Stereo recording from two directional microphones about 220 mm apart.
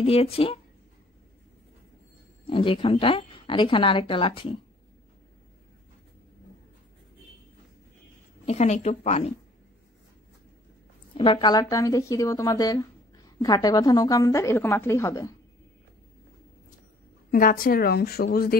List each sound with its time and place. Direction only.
0.0 s a woman's voice: 25° left (ahead or behind)
2.4 s a woman's voice: 25° left (ahead or behind)
8.5 s speech: 30° left (ahead or behind)
11.1 s a woman's voice: 25° left (ahead or behind)
17.3 s a woman's voice: 40° left (ahead or behind)